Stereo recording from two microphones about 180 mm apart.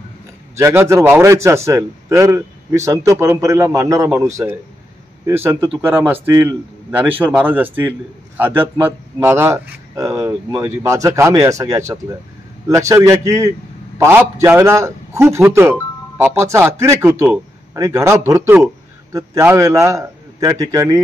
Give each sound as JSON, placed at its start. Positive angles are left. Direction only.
{"t": 0.6, "sound": "a man's voice", "side_deg": -15}
{"t": 5.2, "sound": "a man's voice", "side_deg": -10}